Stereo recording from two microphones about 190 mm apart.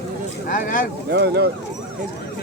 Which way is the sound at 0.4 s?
45° left (ahead or behind).